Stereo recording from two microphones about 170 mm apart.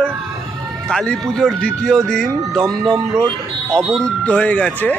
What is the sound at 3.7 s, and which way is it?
Speech, centre (ahead or behind).